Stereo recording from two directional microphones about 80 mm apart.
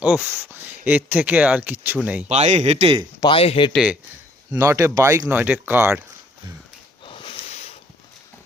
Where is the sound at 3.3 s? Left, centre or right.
Left.